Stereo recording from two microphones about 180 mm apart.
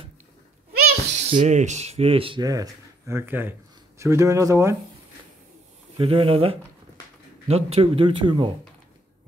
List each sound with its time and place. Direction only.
1.1 s speech: 40° right (ahead or behind); by 4.7 s 15° right (ahead or behind)
5.9 s speech: 30° right (ahead or behind)